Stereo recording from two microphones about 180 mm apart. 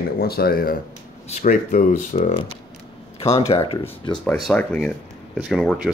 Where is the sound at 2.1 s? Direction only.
35° left (ahead or behind).